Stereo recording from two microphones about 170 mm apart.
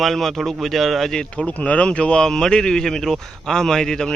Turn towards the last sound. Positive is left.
turn(degrees=5)  # may be behind; listen again after turning